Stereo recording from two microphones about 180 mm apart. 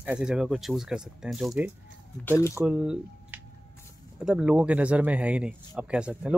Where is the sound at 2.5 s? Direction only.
5° right (ahead or behind).